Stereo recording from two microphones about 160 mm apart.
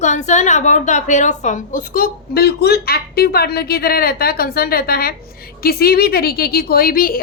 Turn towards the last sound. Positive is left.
turn(degrees=65)  # may be behind; listen again after turning